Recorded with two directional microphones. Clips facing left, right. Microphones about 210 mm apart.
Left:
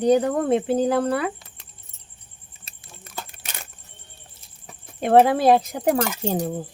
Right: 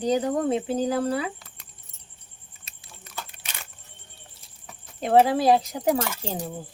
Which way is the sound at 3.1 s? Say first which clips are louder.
Left 2 dB; 45° left (ahead or behind).